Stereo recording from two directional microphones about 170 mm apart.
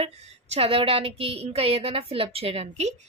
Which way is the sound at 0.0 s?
40° right (ahead or behind).